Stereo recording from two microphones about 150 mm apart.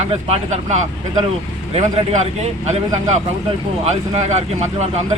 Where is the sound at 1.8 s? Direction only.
50° right (ahead or behind).